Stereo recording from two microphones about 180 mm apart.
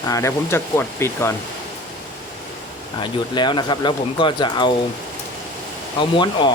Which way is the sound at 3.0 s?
25° left (ahead or behind).